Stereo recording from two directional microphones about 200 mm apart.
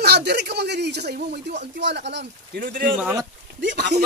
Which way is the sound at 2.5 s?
45° right (ahead or behind).